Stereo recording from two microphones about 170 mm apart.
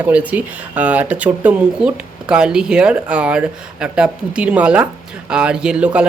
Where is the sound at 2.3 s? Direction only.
5° right (ahead or behind).